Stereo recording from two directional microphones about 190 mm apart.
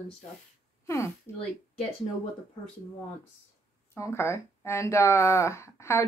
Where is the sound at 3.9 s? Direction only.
15° left (ahead or behind).